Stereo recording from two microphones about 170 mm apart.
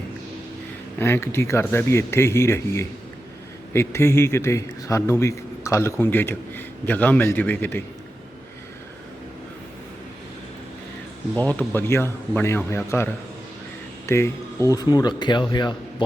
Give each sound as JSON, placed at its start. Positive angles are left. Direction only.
{"t": 0.9, "sound": "a man's voice", "side_deg": 15}
{"t": 11.3, "sound": "a man's voice", "side_deg": 10}
{"t": 14.1, "sound": "speech", "side_deg": 15}